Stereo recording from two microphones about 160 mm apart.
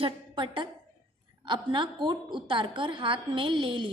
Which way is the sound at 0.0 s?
30° right (ahead or behind).